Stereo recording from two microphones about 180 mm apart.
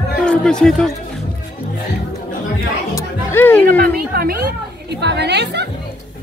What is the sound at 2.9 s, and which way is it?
Chatter, 10° left (ahead or behind).